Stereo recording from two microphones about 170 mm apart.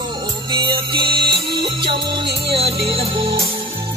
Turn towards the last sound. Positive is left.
turn(degrees=-30)  # may be behind; listen again after turning